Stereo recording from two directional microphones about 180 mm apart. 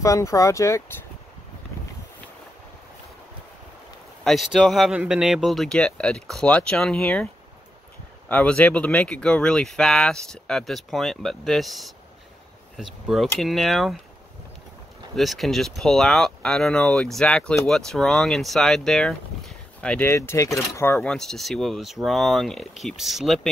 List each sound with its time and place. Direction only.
0.0 s speech: 20° left (ahead or behind)
4.2 s speech: centre (ahead or behind)
8.3 s speech: 5° left (ahead or behind)
15.1 s speech: centre (ahead or behind)